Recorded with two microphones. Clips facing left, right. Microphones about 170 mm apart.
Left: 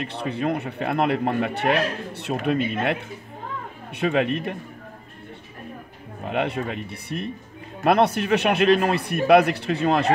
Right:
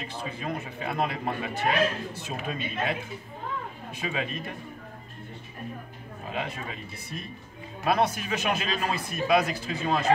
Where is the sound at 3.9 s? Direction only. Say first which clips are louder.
Left 11 dB; 65° left (ahead or behind).